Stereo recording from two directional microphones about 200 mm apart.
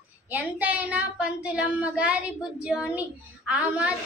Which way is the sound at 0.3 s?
5° right (ahead or behind).